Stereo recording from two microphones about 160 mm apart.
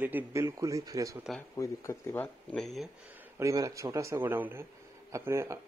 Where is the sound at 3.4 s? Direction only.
20° right (ahead or behind).